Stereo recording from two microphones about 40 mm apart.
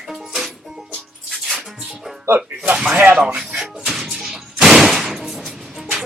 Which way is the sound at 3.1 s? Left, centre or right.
Right.